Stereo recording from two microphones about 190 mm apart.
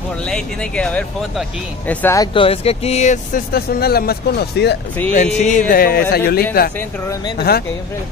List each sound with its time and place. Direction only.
0.3 s speech: 5° left (ahead or behind)
2.3 s speech: 30° left (ahead or behind)
3.5 s speech: 55° left (ahead or behind)
5.1 s speech: 40° left (ahead or behind); by 7.6 s 55° left (ahead or behind)